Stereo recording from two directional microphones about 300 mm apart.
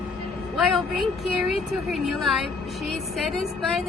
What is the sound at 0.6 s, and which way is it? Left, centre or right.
A woman's voice, centre.